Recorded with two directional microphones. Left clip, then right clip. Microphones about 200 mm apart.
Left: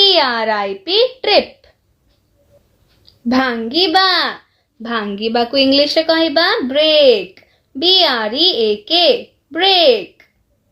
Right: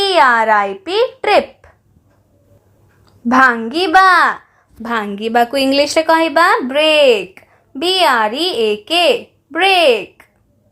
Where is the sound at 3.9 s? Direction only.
15° right (ahead or behind).